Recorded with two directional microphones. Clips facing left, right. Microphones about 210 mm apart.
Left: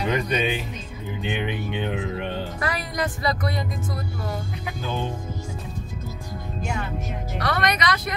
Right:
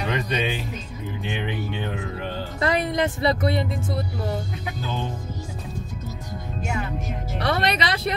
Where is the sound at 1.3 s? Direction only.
20° left (ahead or behind).